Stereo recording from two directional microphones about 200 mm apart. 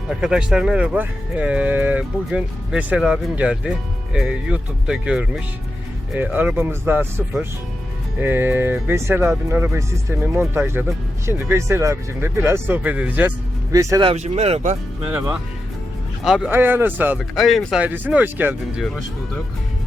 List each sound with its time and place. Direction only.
0.2 s speech: 5° right (ahead or behind)
14.1 s speech: 30° right (ahead or behind)
15.0 s speech: 10° right (ahead or behind)